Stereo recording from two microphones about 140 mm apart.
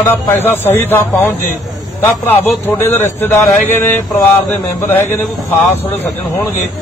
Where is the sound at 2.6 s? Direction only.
15° left (ahead or behind).